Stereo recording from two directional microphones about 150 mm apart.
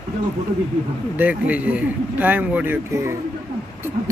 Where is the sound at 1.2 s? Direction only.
10° right (ahead or behind).